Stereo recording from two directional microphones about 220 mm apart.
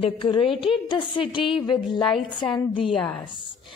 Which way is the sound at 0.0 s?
20° left (ahead or behind).